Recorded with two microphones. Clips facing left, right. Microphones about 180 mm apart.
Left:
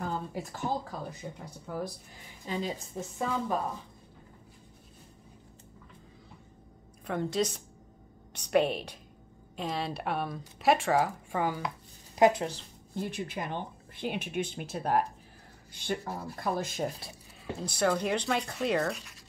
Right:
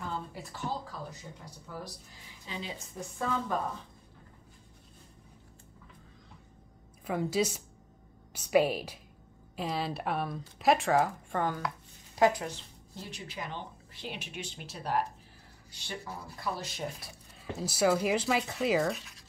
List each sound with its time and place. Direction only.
0.0 s speech: 45° left (ahead or behind)
2.4 s speech: 45° left (ahead or behind)
2.9 s speech: 25° left (ahead or behind)
3.3 s a woman's voice: 15° left (ahead or behind)
7.1 s a woman's voice: 5° right (ahead or behind)
12.2 s speech: 25° left (ahead or behind)
12.9 s speech: 55° left (ahead or behind)
17.4 s speech: 5° right (ahead or behind)